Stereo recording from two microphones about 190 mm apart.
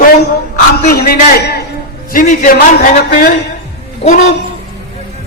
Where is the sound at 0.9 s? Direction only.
55° left (ahead or behind).